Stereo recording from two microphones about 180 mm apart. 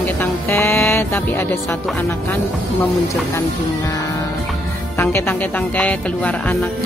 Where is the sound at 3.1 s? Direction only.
20° left (ahead or behind).